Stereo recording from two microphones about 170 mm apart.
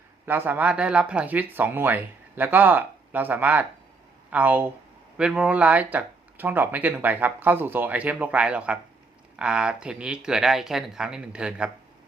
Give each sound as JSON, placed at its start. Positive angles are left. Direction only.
{"t": 0.3, "sound": "speech", "side_deg": -10}